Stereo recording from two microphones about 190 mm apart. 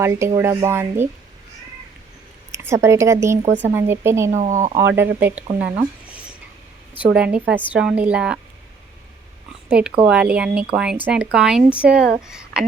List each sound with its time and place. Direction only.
0.0 s a woman's voice: 15° right (ahead or behind)
2.5 s a woman's voice: 15° right (ahead or behind)
4.3 s speech: 40° right (ahead or behind)
4.9 s a woman's voice: 10° right (ahead or behind)
6.9 s a woman's voice: 5° right (ahead or behind)
9.6 s a woman's voice: 5° right (ahead or behind)